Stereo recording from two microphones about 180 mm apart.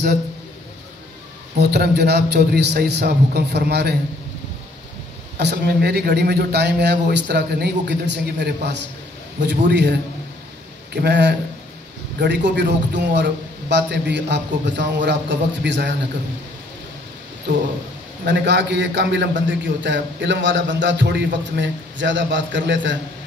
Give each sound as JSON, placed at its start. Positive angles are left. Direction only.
{"t": 1.6, "sound": "speech", "side_deg": -65}
{"t": 5.4, "sound": "a man's voice", "side_deg": -65}
{"t": 18.2, "sound": "a man's voice", "side_deg": -75}